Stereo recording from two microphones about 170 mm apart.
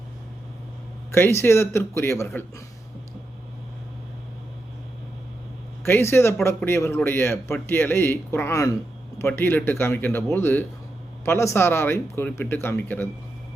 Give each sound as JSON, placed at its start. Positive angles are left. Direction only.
{"t": 1.1, "sound": "speech", "side_deg": 15}
{"t": 5.8, "sound": "speech", "side_deg": 15}